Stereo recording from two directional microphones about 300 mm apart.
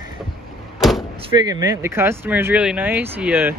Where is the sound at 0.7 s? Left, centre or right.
Centre.